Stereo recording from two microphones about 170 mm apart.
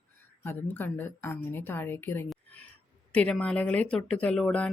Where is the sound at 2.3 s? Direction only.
10° left (ahead or behind).